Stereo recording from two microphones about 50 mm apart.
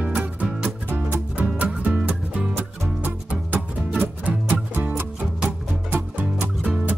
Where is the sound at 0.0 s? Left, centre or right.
Right.